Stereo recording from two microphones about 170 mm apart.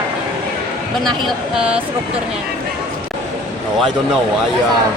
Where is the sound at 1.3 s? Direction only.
5° right (ahead or behind).